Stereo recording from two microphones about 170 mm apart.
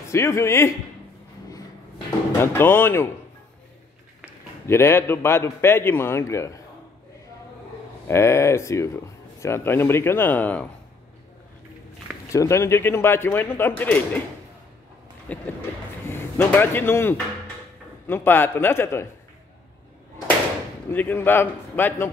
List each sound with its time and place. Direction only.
0.1 s speech: 15° left (ahead or behind)
2.4 s speech: 15° left (ahead or behind)
4.6 s speech: 15° left (ahead or behind)
8.1 s speech: 15° left (ahead or behind)
12.3 s speech: 15° left (ahead or behind)
15.3 s speech: 10° left (ahead or behind)
20.9 s speech: 10° left (ahead or behind)